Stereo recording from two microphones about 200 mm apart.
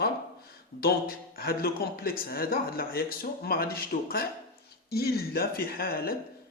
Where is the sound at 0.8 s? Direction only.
50° left (ahead or behind).